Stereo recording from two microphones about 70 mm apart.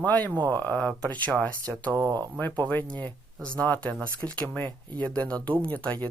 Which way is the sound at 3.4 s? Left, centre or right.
Centre.